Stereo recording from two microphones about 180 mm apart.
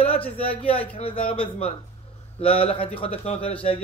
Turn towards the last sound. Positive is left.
turn(degrees=30)  # may be behind; listen again after turning